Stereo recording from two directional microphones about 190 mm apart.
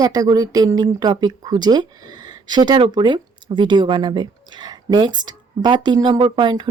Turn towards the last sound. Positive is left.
turn(degrees=-25)  # may be behind; listen again after turning